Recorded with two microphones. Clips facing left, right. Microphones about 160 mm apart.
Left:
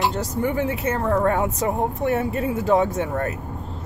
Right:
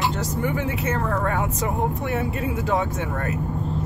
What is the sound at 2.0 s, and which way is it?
Speech, 45° left (ahead or behind).